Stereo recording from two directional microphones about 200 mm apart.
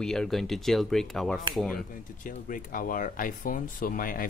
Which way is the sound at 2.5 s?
45° left (ahead or behind).